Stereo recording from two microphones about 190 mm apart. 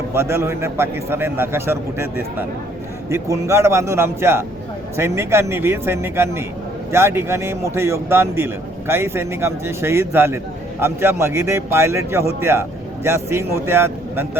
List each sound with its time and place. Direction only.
0.1 s speech: 15° right (ahead or behind)